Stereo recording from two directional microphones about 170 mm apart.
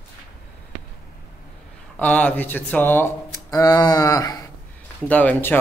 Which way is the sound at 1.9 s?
10° left (ahead or behind).